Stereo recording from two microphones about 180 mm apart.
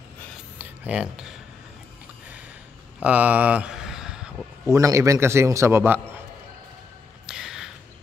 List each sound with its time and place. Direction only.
0.6 s mechanisms: 5° right (ahead or behind)
3.0 s a sound: 10° right (ahead or behind)
4.6 s a man's voice: 15° right (ahead or behind)
7.2 s music: 5° right (ahead or behind)